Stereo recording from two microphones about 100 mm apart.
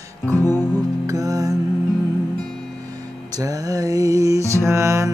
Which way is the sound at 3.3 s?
35° right (ahead or behind).